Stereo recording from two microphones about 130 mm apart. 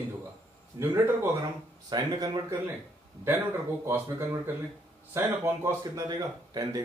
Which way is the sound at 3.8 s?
20° right (ahead or behind).